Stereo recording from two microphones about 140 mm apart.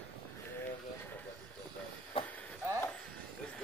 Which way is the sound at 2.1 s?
40° left (ahead or behind).